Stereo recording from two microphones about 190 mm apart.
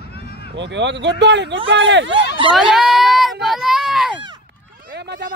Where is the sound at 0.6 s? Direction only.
70° right (ahead or behind).